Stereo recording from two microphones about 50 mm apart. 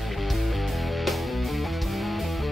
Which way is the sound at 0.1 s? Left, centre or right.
Centre.